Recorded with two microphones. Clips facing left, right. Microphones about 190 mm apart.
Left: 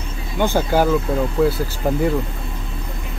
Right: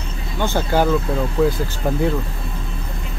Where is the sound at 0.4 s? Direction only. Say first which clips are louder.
Left 2 dB; 10° left (ahead or behind).